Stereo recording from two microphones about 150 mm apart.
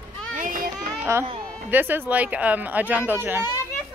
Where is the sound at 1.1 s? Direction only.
20° right (ahead or behind).